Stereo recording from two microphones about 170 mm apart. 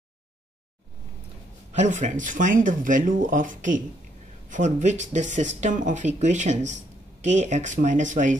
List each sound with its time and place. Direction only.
1.7 s speech: 45° right (ahead or behind)